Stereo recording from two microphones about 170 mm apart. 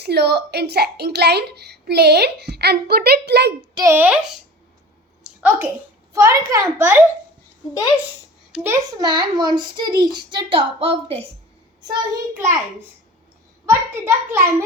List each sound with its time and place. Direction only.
0.0 s a woman's voice: 75° right (ahead or behind)
3.8 s a child's voice: 15° right (ahead or behind)
5.4 s a child's voice: 10° right (ahead or behind)
7.7 s a woman's voice: 20° left (ahead or behind)
8.5 s a child's voice: 15° right (ahead or behind)
9.0 s a child's voice: 25° right (ahead or behind)
11.8 s a child's voice: 20° right (ahead or behind)
13.7 s a child's voice: 15° right (ahead or behind)